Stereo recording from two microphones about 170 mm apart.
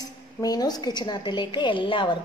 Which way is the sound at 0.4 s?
20° left (ahead or behind).